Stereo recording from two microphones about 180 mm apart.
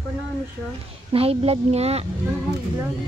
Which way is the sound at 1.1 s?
35° right (ahead or behind).